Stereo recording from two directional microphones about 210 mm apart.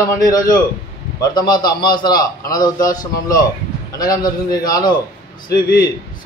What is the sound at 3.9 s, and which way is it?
A man's voice, 20° left (ahead or behind).